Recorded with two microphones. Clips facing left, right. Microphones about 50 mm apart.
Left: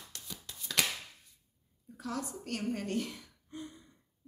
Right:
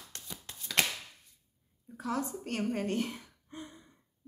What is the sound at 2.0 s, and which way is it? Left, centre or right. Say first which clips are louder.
Speech: right 4 dB; right.